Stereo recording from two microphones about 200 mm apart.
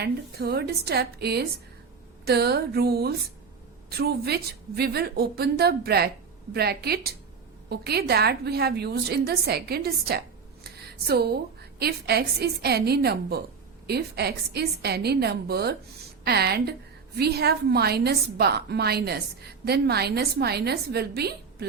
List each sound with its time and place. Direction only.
0.0 s a woman's voice: 50° right (ahead or behind)